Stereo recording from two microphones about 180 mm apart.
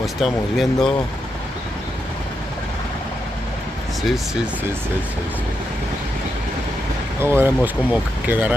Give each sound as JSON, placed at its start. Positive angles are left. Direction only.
{"t": 0.0, "sound": "speech", "side_deg": 0}
{"t": 7.2, "sound": "speech", "side_deg": -10}